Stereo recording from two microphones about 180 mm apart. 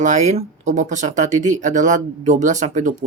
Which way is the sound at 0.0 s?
40° right (ahead or behind).